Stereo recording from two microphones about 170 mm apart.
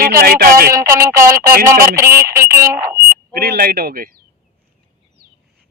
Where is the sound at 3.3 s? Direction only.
65° right (ahead or behind).